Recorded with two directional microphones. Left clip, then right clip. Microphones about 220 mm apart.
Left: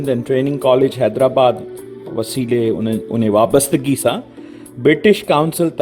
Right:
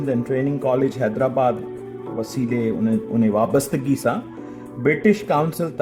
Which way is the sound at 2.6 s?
50° left (ahead or behind).